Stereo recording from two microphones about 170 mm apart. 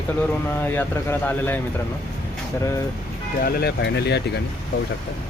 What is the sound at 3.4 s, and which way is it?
Speech, 65° left (ahead or behind).